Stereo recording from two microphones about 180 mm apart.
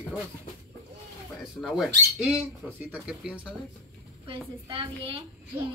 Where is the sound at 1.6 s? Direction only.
Centre (ahead or behind).